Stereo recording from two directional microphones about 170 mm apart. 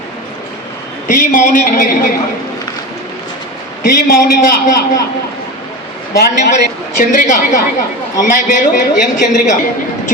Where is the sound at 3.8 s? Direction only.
65° left (ahead or behind).